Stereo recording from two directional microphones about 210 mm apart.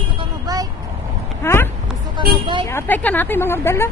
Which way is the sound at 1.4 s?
10° left (ahead or behind).